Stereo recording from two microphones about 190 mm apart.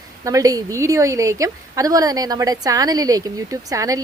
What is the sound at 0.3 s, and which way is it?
A woman's voice, 20° right (ahead or behind).